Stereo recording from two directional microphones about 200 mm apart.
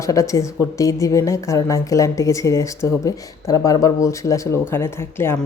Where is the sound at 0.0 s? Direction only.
15° left (ahead or behind).